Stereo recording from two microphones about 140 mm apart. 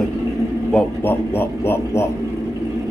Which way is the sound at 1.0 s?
15° left (ahead or behind).